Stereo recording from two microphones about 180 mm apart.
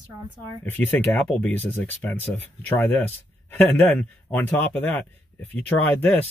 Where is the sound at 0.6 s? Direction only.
10° left (ahead or behind).